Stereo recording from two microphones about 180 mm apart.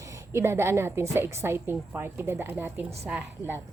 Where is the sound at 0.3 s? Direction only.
15° right (ahead or behind).